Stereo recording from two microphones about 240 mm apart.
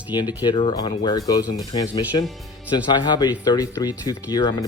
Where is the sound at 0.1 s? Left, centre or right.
Centre.